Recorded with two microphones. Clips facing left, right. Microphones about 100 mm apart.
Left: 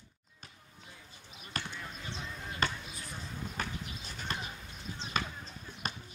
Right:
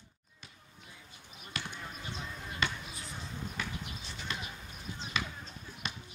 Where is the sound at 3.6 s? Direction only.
45° left (ahead or behind).